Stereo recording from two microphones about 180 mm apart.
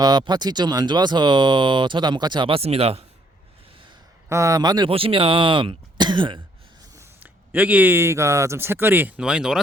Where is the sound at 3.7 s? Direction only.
30° right (ahead or behind).